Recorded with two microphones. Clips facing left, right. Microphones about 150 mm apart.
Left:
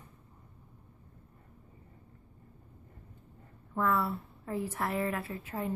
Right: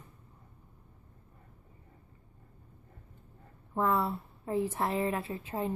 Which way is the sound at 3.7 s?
25° right (ahead or behind).